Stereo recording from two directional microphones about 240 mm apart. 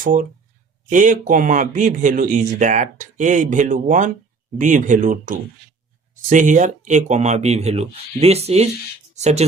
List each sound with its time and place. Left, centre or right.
0.0 s speech: right